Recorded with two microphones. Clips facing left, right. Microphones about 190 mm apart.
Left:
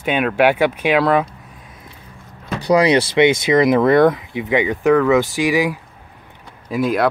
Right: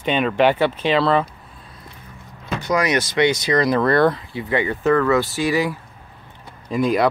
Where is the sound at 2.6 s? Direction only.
30° left (ahead or behind); by 5.8 s 15° left (ahead or behind).